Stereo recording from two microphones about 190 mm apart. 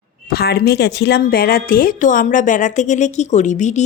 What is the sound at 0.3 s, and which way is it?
Speech, 55° left (ahead or behind).